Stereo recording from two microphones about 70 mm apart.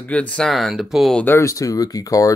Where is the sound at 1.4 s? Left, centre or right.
Left.